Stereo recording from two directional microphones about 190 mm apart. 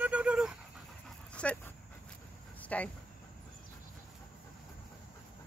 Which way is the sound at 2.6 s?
5° left (ahead or behind).